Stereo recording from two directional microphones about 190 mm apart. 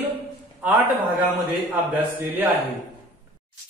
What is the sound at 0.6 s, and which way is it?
Speech, 10° right (ahead or behind).